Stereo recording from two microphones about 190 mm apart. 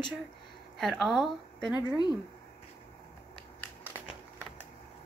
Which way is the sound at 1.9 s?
20° left (ahead or behind).